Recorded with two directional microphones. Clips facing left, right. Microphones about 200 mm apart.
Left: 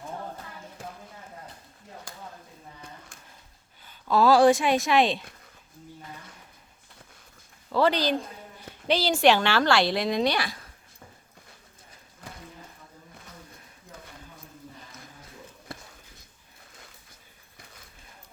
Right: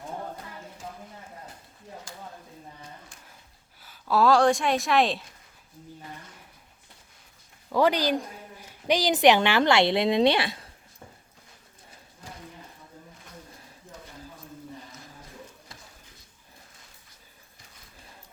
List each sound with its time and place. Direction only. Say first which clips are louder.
3.8 s speech: left 1 dB; 5° right (ahead or behind)
7.7 s speech: right 1 dB; 15° right (ahead or behind)
15.7 s a sound: left 8 dB; 60° left (ahead or behind)